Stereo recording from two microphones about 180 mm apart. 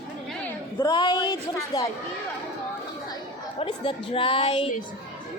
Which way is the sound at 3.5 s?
30° left (ahead or behind).